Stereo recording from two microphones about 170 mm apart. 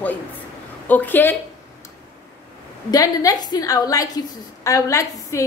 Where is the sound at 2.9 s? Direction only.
20° left (ahead or behind).